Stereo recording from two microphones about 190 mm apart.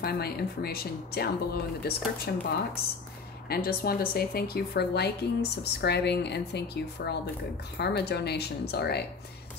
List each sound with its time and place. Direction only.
0.0 s speech: 55° left (ahead or behind)